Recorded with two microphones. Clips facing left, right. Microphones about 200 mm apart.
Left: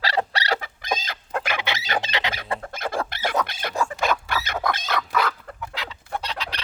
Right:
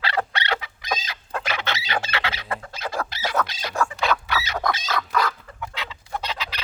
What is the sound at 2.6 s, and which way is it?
Chicken, 50° left (ahead or behind).